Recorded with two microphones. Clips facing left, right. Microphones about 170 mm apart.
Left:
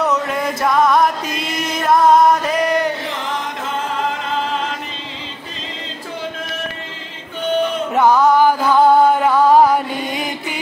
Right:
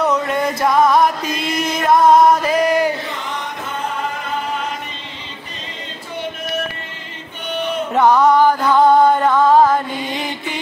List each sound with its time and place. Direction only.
0.0 s music: centre (ahead or behind)
7.9 s music: 5° left (ahead or behind)